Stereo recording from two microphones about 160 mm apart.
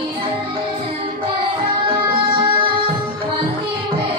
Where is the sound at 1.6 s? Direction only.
35° right (ahead or behind).